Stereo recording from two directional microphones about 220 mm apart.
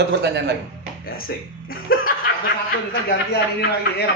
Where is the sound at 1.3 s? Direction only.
50° left (ahead or behind).